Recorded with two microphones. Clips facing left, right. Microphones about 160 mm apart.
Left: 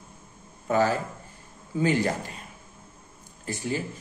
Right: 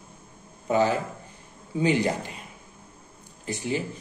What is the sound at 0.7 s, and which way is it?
Speech, 15° right (ahead or behind).